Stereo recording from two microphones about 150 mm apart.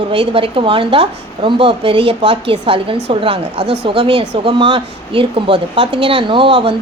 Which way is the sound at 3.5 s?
90° right.